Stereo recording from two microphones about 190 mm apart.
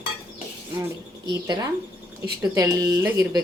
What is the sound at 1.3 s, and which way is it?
Speech, 20° right (ahead or behind).